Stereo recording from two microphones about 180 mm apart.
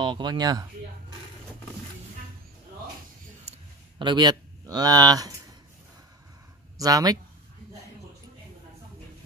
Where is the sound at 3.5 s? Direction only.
35° right (ahead or behind).